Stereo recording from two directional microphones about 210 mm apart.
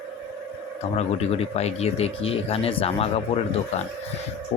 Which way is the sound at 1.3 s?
30° left (ahead or behind).